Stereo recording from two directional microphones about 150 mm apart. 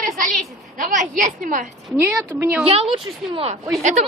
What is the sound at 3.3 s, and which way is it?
Speech, 40° right (ahead or behind).